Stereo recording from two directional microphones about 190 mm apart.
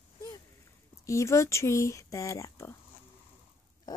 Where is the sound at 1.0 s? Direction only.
15° left (ahead or behind).